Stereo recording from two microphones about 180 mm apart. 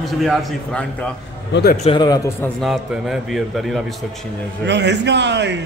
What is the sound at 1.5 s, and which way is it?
Speech, 55° left (ahead or behind).